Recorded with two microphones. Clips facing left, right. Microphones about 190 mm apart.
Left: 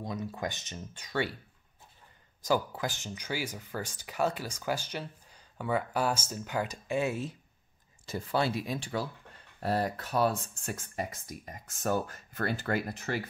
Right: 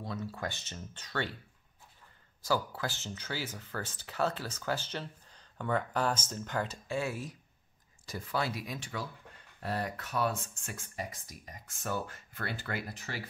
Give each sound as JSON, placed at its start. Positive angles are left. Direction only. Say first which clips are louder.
{"t": 0.0, "sound": "speech", "louder": "left 3 dB", "side_deg": 15}
{"t": 2.4, "sound": "speech", "louder": "left 3 dB", "side_deg": 20}